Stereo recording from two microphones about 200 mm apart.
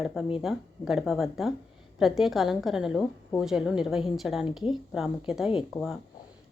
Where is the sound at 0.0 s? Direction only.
Centre (ahead or behind).